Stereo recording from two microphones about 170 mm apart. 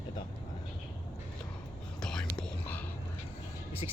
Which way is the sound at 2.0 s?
5° left (ahead or behind).